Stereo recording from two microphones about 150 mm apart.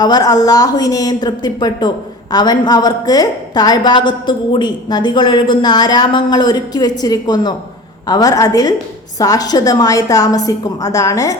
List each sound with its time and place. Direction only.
0.0 s a woman's voice: 25° left (ahead or behind)